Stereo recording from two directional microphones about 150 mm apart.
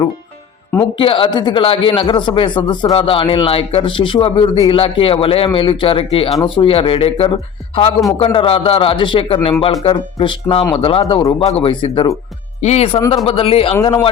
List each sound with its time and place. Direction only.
0.9 s speech: 35° left (ahead or behind)